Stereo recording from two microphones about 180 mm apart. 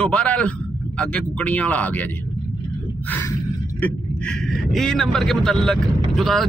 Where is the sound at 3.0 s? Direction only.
10° left (ahead or behind).